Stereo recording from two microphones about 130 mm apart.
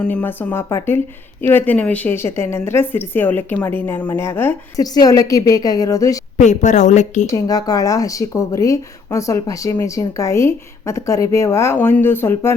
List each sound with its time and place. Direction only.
0.0 s speech: 15° left (ahead or behind)
4.8 s speech: 30° left (ahead or behind)
6.4 s a woman's voice: 65° left (ahead or behind)
7.3 s speech: 30° left (ahead or behind)